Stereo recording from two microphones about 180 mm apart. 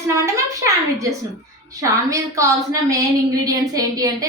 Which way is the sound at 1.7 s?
20° right (ahead or behind).